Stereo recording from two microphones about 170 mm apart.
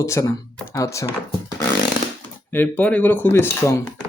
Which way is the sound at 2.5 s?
10° left (ahead or behind).